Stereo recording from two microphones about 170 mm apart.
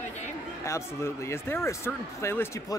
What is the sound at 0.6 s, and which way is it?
Speech, 15° left (ahead or behind).